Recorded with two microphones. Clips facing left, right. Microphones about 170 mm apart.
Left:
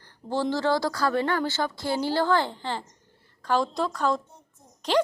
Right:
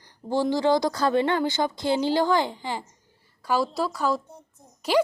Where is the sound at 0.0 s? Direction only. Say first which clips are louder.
Right 3 dB; 15° right (ahead or behind).